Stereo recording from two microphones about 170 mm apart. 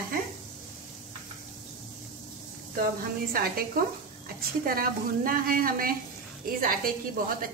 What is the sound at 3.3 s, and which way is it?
Speech, 60° right (ahead or behind).